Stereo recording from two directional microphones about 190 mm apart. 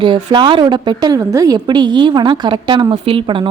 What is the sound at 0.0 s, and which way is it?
A woman's voice, 25° right (ahead or behind).